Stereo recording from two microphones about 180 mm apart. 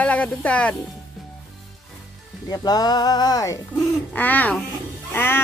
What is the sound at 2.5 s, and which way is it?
Music, 20° left (ahead or behind).